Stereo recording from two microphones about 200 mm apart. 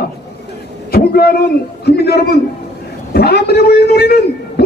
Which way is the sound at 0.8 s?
50° left (ahead or behind).